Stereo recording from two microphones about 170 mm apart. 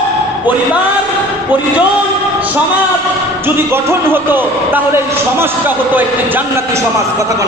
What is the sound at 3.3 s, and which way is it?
A man's voice, 10° right (ahead or behind).